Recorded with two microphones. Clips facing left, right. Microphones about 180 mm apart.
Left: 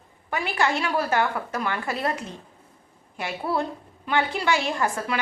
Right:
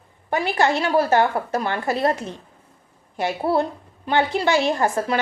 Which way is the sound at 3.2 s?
35° right (ahead or behind).